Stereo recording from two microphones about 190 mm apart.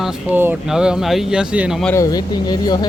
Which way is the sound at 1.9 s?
20° left (ahead or behind).